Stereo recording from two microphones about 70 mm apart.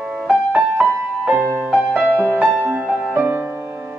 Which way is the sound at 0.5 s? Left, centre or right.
Centre.